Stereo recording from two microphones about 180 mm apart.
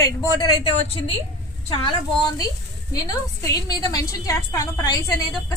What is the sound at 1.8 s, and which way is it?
A woman's voice, 20° left (ahead or behind).